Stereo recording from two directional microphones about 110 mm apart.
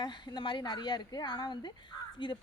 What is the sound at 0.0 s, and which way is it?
A woman's voice, 40° left (ahead or behind).